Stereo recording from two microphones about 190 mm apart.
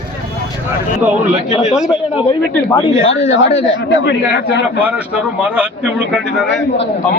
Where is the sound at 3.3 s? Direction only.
75° left (ahead or behind).